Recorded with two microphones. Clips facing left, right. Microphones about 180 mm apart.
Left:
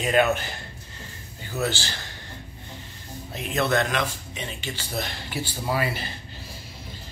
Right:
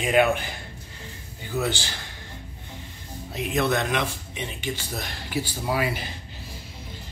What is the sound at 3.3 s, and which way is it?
Speech, 15° right (ahead or behind).